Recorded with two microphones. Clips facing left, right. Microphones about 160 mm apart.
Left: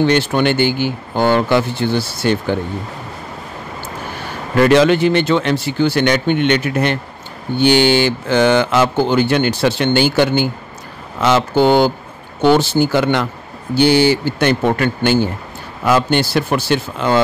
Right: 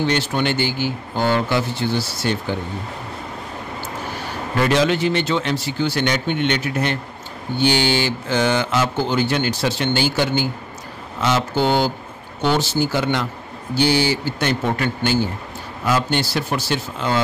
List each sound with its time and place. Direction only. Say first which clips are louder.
0.0 s speech: left 6 dB; 60° left (ahead or behind)
4.6 s speech: left 7 dB; 65° left (ahead or behind)